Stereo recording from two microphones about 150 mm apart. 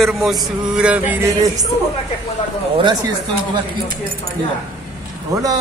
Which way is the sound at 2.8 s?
30° right (ahead or behind).